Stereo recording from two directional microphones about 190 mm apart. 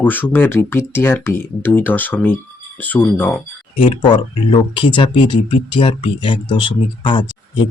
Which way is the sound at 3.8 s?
25° left (ahead or behind).